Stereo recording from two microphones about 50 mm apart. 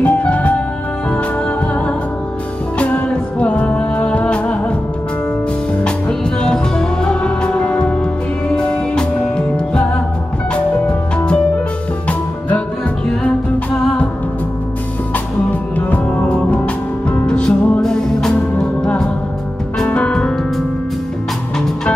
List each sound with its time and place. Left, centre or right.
0.0 s music: left
2.8 s music: left
5.9 s music: centre
10.9 s music: left
16.1 s music: left
19.9 s music: left